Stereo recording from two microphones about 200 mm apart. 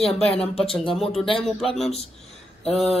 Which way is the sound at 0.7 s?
Centre (ahead or behind).